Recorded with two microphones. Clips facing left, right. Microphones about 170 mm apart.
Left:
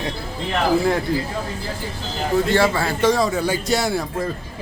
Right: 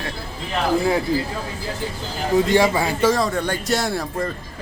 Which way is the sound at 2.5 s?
15° right (ahead or behind).